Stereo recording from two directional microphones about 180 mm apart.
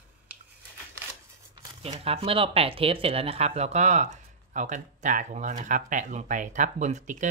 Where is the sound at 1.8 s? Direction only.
35° right (ahead or behind).